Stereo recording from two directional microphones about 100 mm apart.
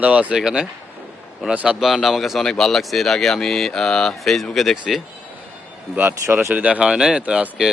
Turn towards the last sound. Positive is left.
turn(degrees=-10)  # may be behind; listen again after turning